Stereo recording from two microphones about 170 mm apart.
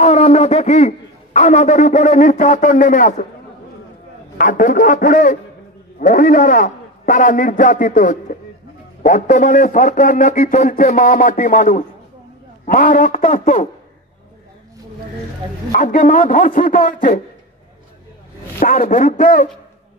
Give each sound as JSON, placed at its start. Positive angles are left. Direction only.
{"t": 0.0, "sound": "a man's voice", "side_deg": 40}
{"t": 4.4, "sound": "a man's voice", "side_deg": 50}
{"t": 15.7, "sound": "a man's voice", "side_deg": 50}
{"t": 18.6, "sound": "a man's voice", "side_deg": 45}